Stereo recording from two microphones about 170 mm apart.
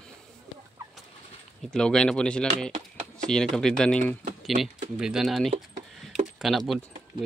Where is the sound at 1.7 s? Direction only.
5° left (ahead or behind).